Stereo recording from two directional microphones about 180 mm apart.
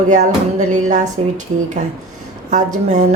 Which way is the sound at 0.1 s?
40° right (ahead or behind).